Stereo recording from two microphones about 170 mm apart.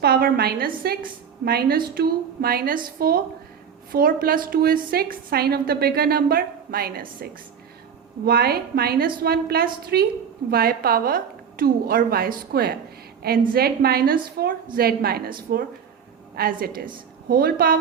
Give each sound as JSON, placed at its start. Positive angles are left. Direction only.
{"t": 0.0, "sound": "a woman's voice", "side_deg": -60}